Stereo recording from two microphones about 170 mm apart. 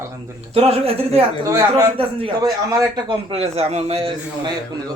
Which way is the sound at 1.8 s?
35° right (ahead or behind).